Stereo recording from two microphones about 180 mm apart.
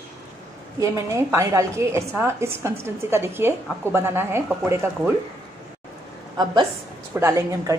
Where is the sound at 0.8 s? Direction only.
15° right (ahead or behind).